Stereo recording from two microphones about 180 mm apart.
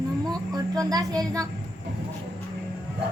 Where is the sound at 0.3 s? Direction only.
20° right (ahead or behind).